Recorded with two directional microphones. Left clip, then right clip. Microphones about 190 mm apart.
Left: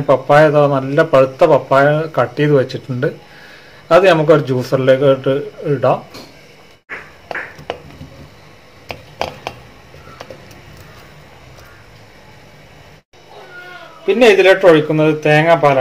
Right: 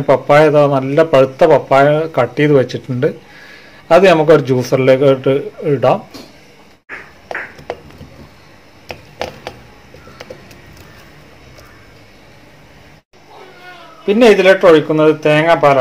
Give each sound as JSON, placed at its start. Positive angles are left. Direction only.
{"t": 0.0, "sound": "a man's voice", "side_deg": -30}
{"t": 14.0, "sound": "a man's voice", "side_deg": -25}